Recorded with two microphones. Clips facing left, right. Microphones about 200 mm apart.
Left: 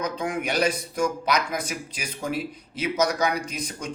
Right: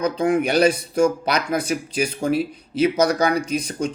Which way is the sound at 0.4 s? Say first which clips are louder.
Right 7 dB; 30° right (ahead or behind).